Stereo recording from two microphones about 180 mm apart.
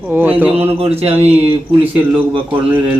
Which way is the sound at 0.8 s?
35° right (ahead or behind).